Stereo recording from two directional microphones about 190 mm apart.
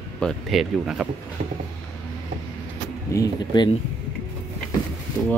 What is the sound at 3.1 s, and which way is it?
Speech, 20° left (ahead or behind).